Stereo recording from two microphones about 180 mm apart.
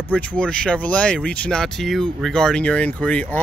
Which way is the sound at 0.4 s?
5° left (ahead or behind).